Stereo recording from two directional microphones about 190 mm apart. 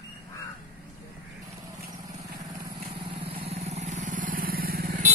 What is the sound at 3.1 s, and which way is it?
Vehicle, 30° right (ahead or behind).